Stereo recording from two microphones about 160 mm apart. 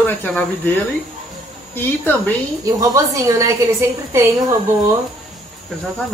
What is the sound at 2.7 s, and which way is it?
Speech, 20° right (ahead or behind).